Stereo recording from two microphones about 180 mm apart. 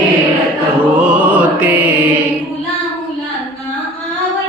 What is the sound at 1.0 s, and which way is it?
Music, 5° right (ahead or behind).